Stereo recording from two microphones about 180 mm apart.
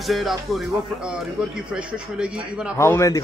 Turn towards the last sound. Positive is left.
turn(degrees=15)  # may be behind; listen again after turning